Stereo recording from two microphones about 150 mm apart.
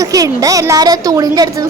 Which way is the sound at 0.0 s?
20° right (ahead or behind).